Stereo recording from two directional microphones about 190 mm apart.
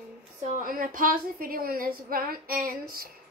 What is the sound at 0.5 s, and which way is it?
A woman's voice, 50° right (ahead or behind).